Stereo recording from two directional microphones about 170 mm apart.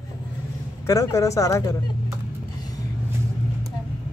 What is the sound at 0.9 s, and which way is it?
Speech, 20° left (ahead or behind).